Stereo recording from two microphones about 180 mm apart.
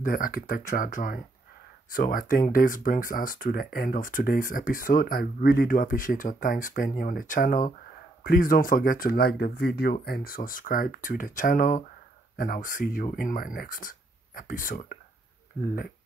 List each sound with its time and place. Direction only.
0.0 s speech: 50° left (ahead or behind)
15.5 s speech: 10° left (ahead or behind)